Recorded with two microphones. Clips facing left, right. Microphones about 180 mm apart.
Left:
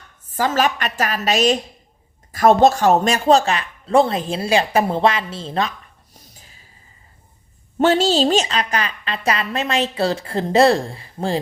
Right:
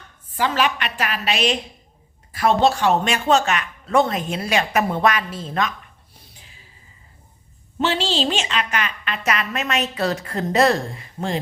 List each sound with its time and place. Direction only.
0.3 s a woman's voice: 40° left (ahead or behind)
6.1 s a sound: 40° left (ahead or behind)
7.8 s a woman's voice: 45° left (ahead or behind)